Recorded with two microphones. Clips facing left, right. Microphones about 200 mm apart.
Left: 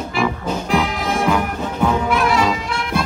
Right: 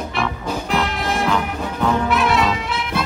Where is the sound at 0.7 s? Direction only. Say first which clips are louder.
Left 2 dB; centre (ahead or behind).